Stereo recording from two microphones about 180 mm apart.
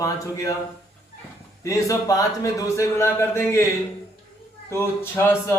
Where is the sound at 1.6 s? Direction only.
15° left (ahead or behind).